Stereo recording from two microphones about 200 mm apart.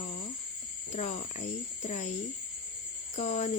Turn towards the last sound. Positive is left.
turn(degrees=30)  # may be behind; listen again after turning